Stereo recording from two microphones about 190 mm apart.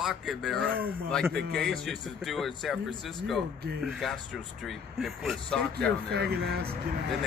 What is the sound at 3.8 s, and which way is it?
A man's voice, centre (ahead or behind).